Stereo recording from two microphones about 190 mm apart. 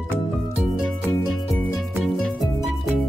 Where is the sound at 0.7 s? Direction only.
5° right (ahead or behind).